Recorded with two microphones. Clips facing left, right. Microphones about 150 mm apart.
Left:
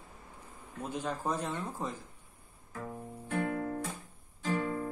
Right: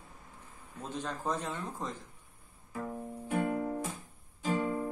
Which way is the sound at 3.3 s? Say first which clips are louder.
Right 1 dB; 15° right (ahead or behind).